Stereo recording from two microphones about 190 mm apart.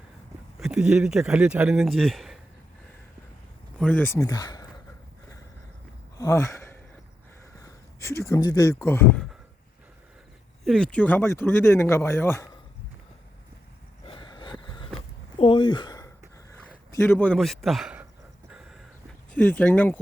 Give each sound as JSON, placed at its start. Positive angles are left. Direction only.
{"t": 0.6, "sound": "speech", "side_deg": -5}
{"t": 3.8, "sound": "speech", "side_deg": 10}
{"t": 6.1, "sound": "speech", "side_deg": 15}
{"t": 10.6, "sound": "speech", "side_deg": 0}
{"t": 14.0, "sound": "a sound", "side_deg": 25}
{"t": 16.9, "sound": "speech", "side_deg": 15}
{"t": 18.5, "sound": "a sound", "side_deg": -5}
{"t": 19.3, "sound": "speech", "side_deg": 10}